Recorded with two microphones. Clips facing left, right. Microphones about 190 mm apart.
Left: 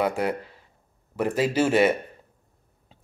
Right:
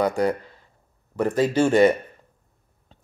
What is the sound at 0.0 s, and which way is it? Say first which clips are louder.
Speech: right 3 dB; 5° left (ahead or behind).